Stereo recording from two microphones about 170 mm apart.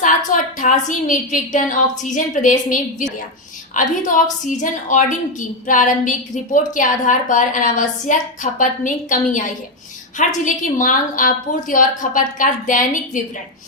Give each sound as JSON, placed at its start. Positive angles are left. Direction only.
{"t": 0.0, "sound": "a woman's voice", "side_deg": 50}